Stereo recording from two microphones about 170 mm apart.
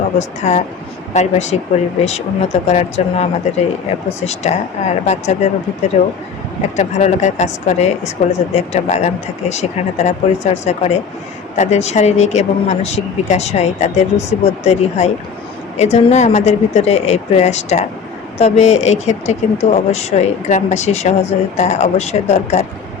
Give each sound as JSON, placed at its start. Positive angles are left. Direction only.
{"t": 0.2, "sound": "speech", "side_deg": 45}
{"t": 6.7, "sound": "speech", "side_deg": 45}